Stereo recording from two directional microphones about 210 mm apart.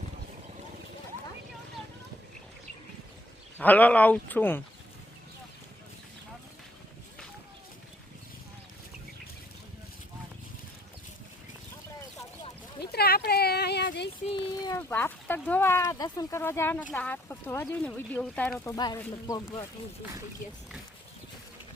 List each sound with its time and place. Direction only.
3.6 s speech: 10° left (ahead or behind)
12.8 s a sound: 50° left (ahead or behind)
14.3 s speech: 20° left (ahead or behind); by 18.5 s 5° left (ahead or behind)
18.6 s speech: 15° left (ahead or behind)